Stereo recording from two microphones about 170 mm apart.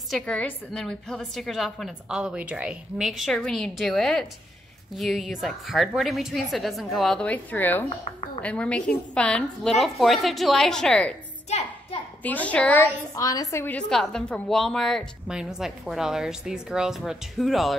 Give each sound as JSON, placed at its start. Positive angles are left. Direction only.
{"t": 0.1, "sound": "a woman's voice", "side_deg": 5}
{"t": 11.4, "sound": "a sound", "side_deg": 40}
{"t": 12.2, "sound": "a woman's voice", "side_deg": 10}